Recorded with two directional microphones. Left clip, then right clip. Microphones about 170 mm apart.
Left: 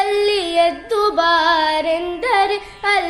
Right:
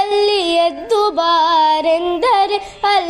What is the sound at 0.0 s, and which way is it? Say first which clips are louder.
Music: right 2 dB; 30° right (ahead or behind).